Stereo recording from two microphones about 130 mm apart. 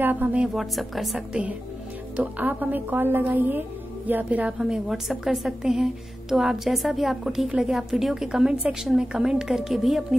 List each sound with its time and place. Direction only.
0.0 s speech: 15° right (ahead or behind)
0.6 s a woman's voice: centre (ahead or behind)
2.1 s a woman's voice: 15° right (ahead or behind)